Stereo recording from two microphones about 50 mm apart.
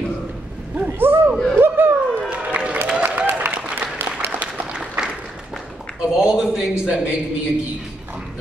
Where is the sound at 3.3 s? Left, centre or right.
Right.